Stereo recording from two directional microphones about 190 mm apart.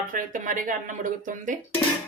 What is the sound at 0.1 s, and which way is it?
Speech, 45° right (ahead or behind).